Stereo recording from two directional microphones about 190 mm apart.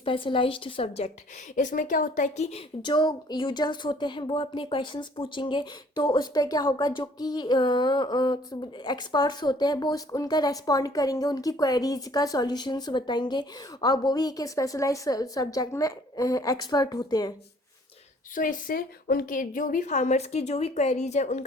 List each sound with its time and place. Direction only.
0.0 s speech: 25° left (ahead or behind)
1.5 s a woman's voice: 40° left (ahead or behind)
2.8 s speech: 25° left (ahead or behind)
18.3 s a woman's voice: 45° left (ahead or behind)